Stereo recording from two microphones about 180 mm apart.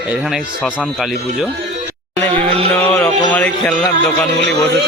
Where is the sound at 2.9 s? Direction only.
10° left (ahead or behind).